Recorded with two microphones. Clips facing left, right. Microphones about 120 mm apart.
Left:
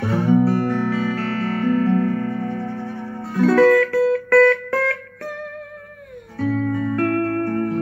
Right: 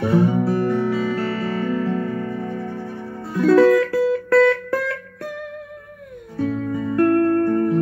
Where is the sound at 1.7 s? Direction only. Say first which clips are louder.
Left 4 dB; 45° left (ahead or behind).